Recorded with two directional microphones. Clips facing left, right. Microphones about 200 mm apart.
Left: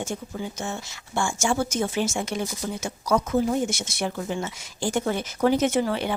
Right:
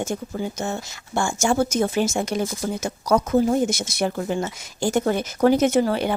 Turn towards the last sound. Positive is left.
turn(degrees=-45)  # may be behind; listen again after turning